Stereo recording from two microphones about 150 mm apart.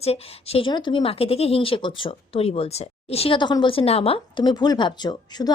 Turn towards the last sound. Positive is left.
turn(degrees=25)  # may be behind; listen again after turning